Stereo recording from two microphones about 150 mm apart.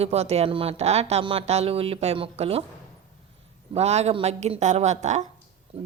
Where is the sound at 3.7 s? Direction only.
45° right (ahead or behind).